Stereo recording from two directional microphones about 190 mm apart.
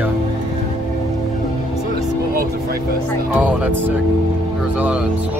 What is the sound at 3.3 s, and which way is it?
Speech, 10° right (ahead or behind).